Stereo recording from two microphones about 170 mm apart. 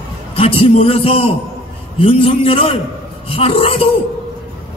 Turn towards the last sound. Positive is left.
turn(degrees=35)  # may be behind; listen again after turning